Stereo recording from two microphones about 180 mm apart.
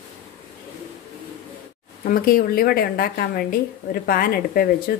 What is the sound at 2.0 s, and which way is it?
A woman's voice, 50° left (ahead or behind).